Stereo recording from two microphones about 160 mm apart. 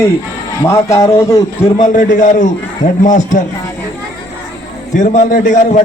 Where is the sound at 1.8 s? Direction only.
50° left (ahead or behind).